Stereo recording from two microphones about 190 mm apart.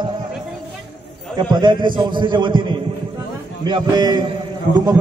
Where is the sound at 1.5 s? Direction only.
20° right (ahead or behind).